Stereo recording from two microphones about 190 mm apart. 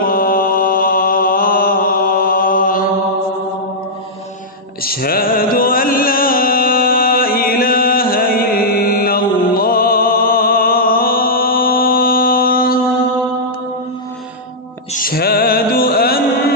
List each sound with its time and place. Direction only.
0.0 s mantra: 50° left (ahead or behind)
4.8 s music: 50° left (ahead or behind)
14.9 s music: 50° left (ahead or behind)